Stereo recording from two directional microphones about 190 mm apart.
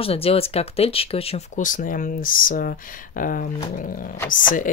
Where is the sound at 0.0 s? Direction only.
30° left (ahead or behind).